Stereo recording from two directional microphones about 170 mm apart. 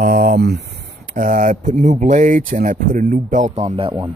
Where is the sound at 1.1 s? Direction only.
50° right (ahead or behind).